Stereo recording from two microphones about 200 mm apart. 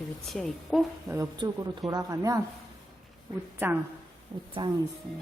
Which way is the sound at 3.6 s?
10° right (ahead or behind).